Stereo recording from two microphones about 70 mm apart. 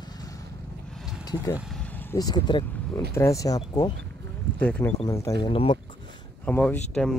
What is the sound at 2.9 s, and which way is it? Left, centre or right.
Speech, left.